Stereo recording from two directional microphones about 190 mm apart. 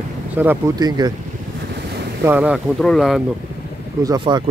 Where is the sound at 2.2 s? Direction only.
10° right (ahead or behind).